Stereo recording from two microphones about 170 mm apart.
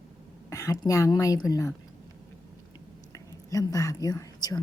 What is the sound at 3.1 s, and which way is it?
Speech, 20° left (ahead or behind).